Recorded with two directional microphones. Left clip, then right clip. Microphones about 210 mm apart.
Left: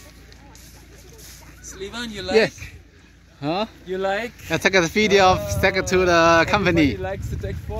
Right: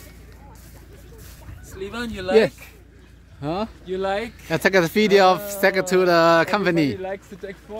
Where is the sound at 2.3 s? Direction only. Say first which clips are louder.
Right 1 dB; 5° right (ahead or behind).